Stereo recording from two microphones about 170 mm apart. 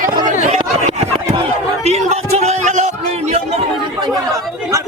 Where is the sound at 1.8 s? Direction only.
40° right (ahead or behind).